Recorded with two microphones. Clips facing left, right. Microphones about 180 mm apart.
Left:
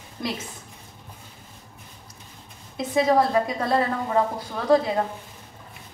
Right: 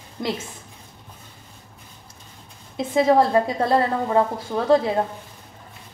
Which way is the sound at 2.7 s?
25° right (ahead or behind).